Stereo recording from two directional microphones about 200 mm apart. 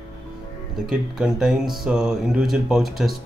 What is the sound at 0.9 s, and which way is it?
Speech, 5° right (ahead or behind).